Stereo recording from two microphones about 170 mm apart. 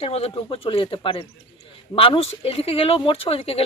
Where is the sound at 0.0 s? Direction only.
35° left (ahead or behind).